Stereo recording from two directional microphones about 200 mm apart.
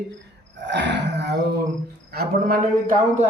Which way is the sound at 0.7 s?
60° right (ahead or behind).